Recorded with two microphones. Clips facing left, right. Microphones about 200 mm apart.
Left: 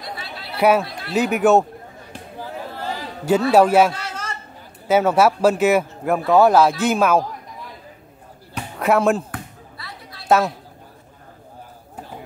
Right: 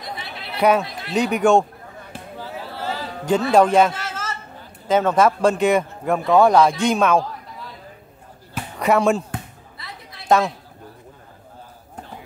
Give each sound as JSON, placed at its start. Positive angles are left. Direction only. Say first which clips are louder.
{"t": 0.0, "sound": "chatter", "louder": "even", "side_deg": -20}
{"t": 0.6, "sound": "a man's voice", "louder": "left 1 dB", "side_deg": 5}
{"t": 3.3, "sound": "a man's voice", "louder": "left 1 dB", "side_deg": 5}
{"t": 4.8, "sound": "a man's voice", "louder": "left 1 dB", "side_deg": 10}
{"t": 8.7, "sound": "speech", "louder": "even", "side_deg": 0}
{"t": 9.3, "sound": "basketball bounce", "louder": "right 1 dB", "side_deg": -20}
{"t": 10.2, "sound": "speech", "louder": "even", "side_deg": 5}